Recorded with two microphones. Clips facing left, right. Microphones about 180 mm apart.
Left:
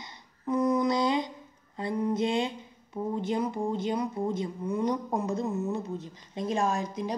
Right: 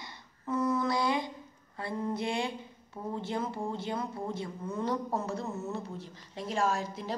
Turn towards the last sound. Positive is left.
turn(degrees=15)  # may be behind; listen again after turning